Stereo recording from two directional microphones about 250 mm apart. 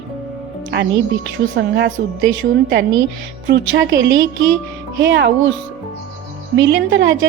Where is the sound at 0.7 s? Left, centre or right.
Right.